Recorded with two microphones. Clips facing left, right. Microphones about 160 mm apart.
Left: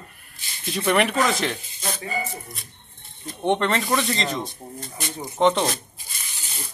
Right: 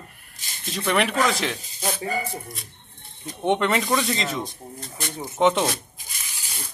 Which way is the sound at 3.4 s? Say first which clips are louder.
Even; 5° right (ahead or behind).